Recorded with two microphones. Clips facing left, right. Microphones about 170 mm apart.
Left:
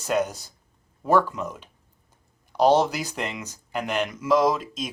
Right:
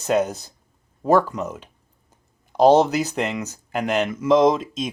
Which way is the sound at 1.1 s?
40° right (ahead or behind).